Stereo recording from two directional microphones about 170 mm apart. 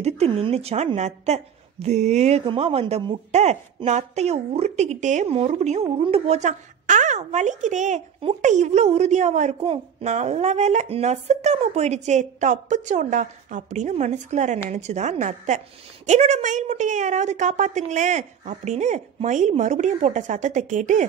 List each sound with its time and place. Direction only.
0.0 s a woman's voice: 35° right (ahead or behind)